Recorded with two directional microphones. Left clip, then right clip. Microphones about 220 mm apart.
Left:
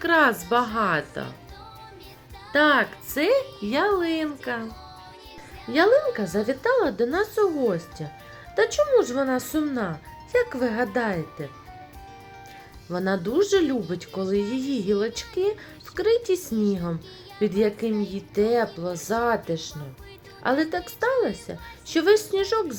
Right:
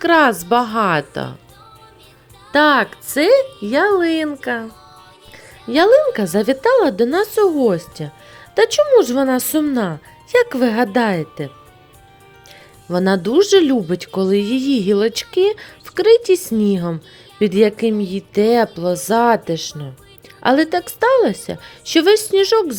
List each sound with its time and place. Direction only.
0.0 s speech: 35° right (ahead or behind)
2.5 s speech: 35° right (ahead or behind)
5.7 s speech: 35° right (ahead or behind)
12.9 s speech: 40° right (ahead or behind)